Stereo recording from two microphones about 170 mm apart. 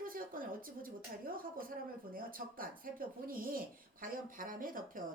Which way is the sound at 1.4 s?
55° right (ahead or behind).